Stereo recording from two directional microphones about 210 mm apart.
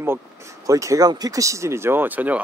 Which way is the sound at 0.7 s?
15° right (ahead or behind).